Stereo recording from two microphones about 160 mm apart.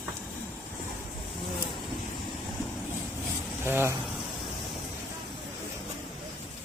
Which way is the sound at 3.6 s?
15° right (ahead or behind).